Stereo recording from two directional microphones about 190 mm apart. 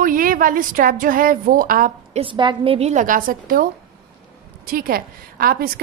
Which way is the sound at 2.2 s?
25° right (ahead or behind).